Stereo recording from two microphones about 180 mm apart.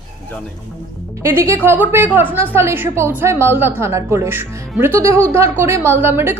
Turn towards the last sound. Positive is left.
turn(degrees=-15)  # may be behind; listen again after turning